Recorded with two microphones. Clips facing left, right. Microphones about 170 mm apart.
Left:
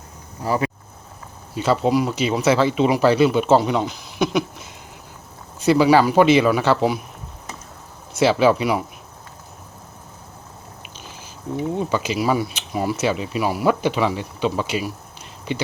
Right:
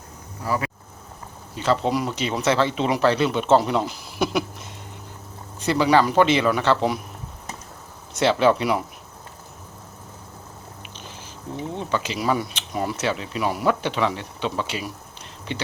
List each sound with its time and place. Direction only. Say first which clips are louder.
0.4 s speech: left 4 dB; 25° left (ahead or behind)
1.5 s speech: left 4 dB; 10° left (ahead or behind)
5.5 s speech: left 4 dB; 10° left (ahead or behind)
8.1 s speech: left 2 dB; 5° left (ahead or behind)
11.7 s speech: left 3 dB; 10° left (ahead or behind)